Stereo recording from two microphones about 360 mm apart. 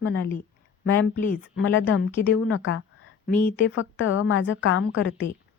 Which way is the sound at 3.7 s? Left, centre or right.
Left.